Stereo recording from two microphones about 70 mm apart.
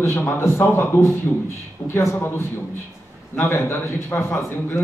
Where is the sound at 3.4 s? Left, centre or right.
Left.